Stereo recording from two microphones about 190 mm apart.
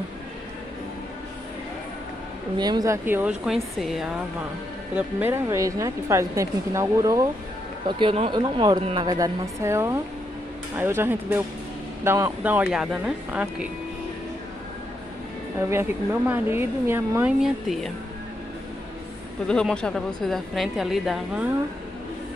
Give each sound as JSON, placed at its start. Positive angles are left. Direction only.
{"t": 2.5, "sound": "a woman's voice", "side_deg": -20}
{"t": 4.9, "sound": "a woman's voice", "side_deg": -10}
{"t": 15.7, "sound": "a woman's voice", "side_deg": -10}
{"t": 17.4, "sound": "a woman's voice", "side_deg": 0}
{"t": 19.4, "sound": "a woman's voice", "side_deg": 5}